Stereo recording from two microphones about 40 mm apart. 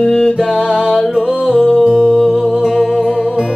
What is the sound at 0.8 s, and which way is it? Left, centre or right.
Music, centre.